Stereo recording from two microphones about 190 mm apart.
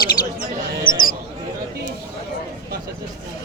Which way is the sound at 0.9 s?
45° left (ahead or behind).